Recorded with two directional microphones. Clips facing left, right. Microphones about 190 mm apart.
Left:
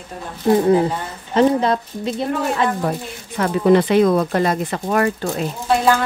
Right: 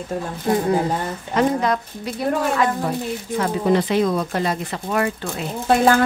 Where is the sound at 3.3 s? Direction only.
60° left (ahead or behind).